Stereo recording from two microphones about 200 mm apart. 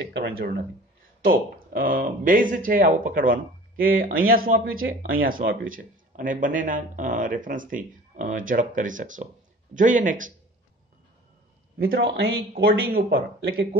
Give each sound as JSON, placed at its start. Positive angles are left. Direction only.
{"t": 0.0, "sound": "speech", "side_deg": -55}
{"t": 11.8, "sound": "speech", "side_deg": -50}